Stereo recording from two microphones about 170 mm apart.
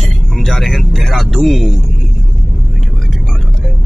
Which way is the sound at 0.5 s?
Centre (ahead or behind).